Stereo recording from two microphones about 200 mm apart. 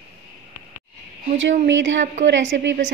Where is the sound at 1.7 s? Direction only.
65° right (ahead or behind).